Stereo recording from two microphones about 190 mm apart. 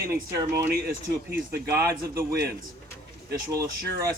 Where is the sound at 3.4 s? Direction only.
15° right (ahead or behind).